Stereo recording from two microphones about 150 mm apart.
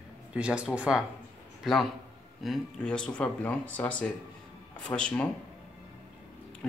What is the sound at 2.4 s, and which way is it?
Speech, 5° left (ahead or behind).